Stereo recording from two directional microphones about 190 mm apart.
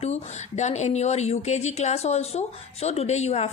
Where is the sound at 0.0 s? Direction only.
35° left (ahead or behind).